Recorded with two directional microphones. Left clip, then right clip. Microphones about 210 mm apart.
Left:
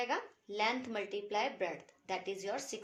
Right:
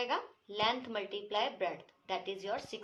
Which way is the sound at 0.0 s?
50° left (ahead or behind).